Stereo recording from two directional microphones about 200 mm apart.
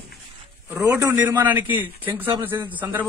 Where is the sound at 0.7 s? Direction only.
15° right (ahead or behind).